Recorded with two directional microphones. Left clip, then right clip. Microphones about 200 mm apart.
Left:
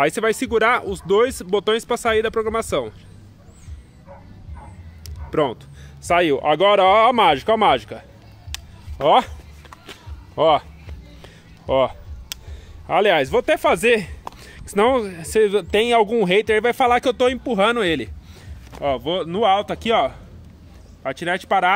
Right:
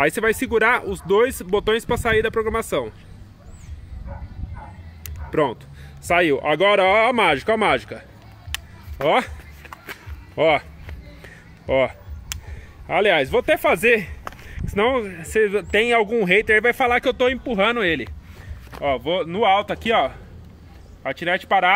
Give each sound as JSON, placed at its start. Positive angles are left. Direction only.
{"t": 0.0, "sound": "speech", "side_deg": 0}
{"t": 5.2, "sound": "speech", "side_deg": 5}
{"t": 9.0, "sound": "speech", "side_deg": 0}
{"t": 9.6, "sound": "music", "side_deg": -10}
{"t": 10.3, "sound": "a sound", "side_deg": -5}
{"t": 12.8, "sound": "speech", "side_deg": 10}
{"t": 14.4, "sound": "speech", "side_deg": 20}